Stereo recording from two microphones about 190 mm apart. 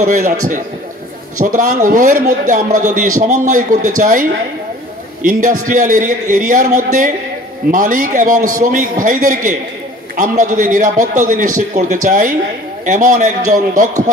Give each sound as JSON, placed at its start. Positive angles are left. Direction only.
{"t": 0.0, "sound": "a man's voice", "side_deg": -40}